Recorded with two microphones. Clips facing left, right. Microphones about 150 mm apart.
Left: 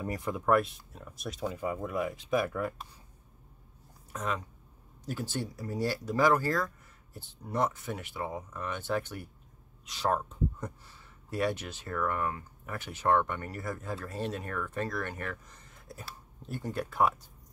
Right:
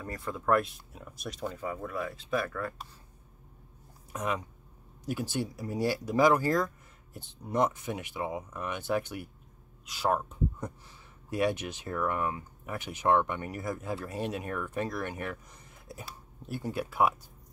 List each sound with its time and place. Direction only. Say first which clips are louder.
0.0 s speech: left 3 dB; 15° left (ahead or behind)
0.5 s speech: even; centre (ahead or behind)
1.6 s speech: left 4 dB; 15° left (ahead or behind)
4.1 s speech: right 2 dB; 15° right (ahead or behind)